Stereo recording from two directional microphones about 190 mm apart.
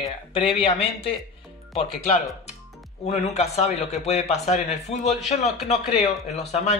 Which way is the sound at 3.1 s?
35° left (ahead or behind).